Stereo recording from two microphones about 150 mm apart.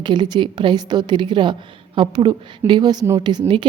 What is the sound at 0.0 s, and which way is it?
A woman's voice, 30° right (ahead or behind).